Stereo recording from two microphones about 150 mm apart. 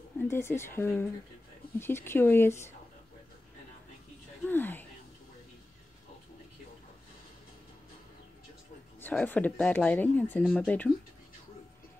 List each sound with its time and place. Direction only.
0.2 s speech: 15° left (ahead or behind)
4.5 s speech: 15° left (ahead or behind)
9.0 s speech: 10° left (ahead or behind)